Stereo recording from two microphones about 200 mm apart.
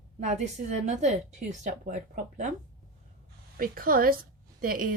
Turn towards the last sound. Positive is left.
turn(degrees=-45)  # may be behind; listen again after turning